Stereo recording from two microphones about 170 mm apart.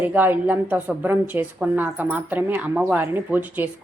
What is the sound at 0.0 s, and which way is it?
A woman's voice, 10° right (ahead or behind).